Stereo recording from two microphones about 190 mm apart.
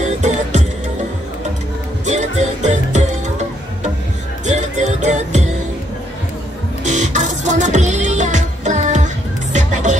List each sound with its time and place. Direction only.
0.0 s music: 35° right (ahead or behind)
2.0 s music: 40° right (ahead or behind)
4.5 s music: 40° right (ahead or behind)
6.8 s music: 40° right (ahead or behind)